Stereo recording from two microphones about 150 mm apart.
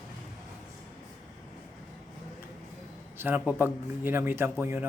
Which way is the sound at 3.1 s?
15° right (ahead or behind).